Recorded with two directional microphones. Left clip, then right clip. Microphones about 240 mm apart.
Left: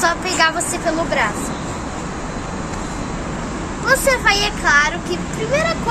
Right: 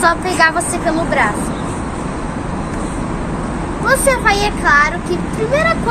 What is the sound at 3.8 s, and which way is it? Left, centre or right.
A woman's voice, centre.